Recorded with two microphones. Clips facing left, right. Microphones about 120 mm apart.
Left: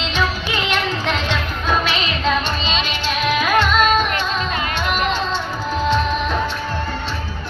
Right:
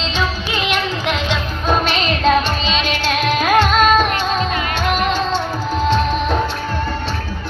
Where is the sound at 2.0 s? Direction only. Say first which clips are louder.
Right 5 dB; 35° right (ahead or behind).